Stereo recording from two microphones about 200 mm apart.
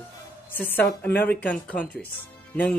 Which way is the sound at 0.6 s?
10° left (ahead or behind).